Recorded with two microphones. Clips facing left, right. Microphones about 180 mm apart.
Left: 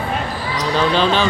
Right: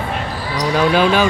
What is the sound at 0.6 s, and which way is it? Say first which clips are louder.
Speech: right 3 dB; 10° right (ahead or behind).